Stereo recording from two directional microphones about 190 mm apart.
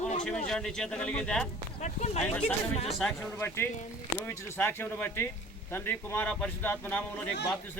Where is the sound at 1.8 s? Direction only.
35° left (ahead or behind).